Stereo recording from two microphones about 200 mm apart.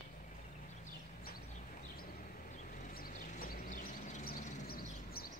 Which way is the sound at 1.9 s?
45° left (ahead or behind).